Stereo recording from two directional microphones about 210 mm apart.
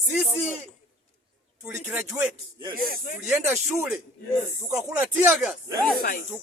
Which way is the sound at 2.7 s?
45° left (ahead or behind).